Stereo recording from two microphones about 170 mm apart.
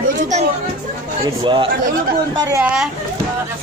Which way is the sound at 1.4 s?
30° right (ahead or behind).